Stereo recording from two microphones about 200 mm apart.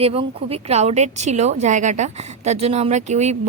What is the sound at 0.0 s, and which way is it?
A woman's voice, 30° right (ahead or behind).